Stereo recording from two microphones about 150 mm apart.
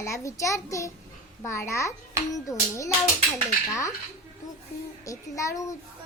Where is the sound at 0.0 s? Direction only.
20° left (ahead or behind).